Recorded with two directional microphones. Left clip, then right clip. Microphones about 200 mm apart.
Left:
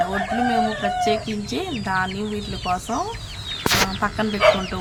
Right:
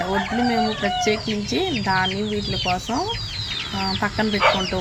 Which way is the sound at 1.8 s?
5° right (ahead or behind).